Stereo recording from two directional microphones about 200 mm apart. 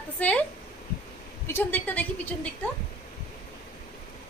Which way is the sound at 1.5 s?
10° left (ahead or behind).